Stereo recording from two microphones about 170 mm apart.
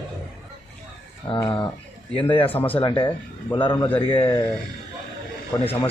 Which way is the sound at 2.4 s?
10° left (ahead or behind).